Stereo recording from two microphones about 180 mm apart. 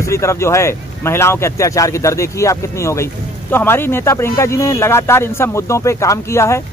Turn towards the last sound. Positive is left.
turn(degrees=15)  # may be behind; listen again after turning